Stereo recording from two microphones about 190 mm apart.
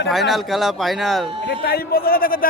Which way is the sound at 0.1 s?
Centre (ahead or behind).